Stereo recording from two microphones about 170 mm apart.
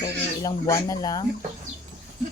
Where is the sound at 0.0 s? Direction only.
20° left (ahead or behind).